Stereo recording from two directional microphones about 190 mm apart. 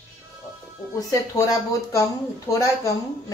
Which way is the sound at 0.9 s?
20° left (ahead or behind).